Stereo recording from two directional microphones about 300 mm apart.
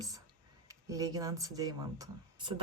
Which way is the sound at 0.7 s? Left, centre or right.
Centre.